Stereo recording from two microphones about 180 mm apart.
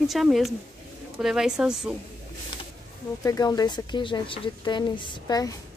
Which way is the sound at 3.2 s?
20° left (ahead or behind).